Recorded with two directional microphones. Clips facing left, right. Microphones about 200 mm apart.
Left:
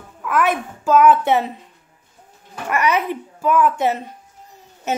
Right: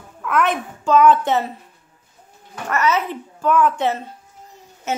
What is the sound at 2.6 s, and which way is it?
Speech, 15° left (ahead or behind).